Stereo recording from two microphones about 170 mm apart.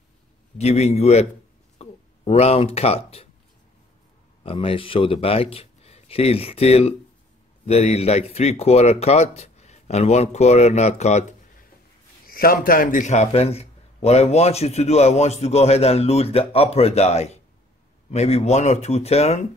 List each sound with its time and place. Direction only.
0.6 s a man's voice: 40° left (ahead or behind)
4.4 s a man's voice: 35° left (ahead or behind)
12.3 s a man's voice: 60° left (ahead or behind); by 19.4 s 40° left (ahead or behind)